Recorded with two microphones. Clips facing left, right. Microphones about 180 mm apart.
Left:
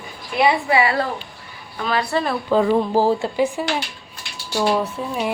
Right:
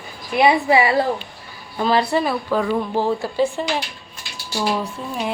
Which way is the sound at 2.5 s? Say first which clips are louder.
Left 4 dB; 30° left (ahead or behind).